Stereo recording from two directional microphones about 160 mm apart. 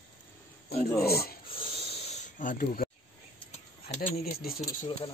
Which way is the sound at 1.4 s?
35° left (ahead or behind).